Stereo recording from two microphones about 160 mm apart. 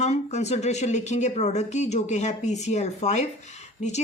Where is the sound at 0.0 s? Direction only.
45° left (ahead or behind).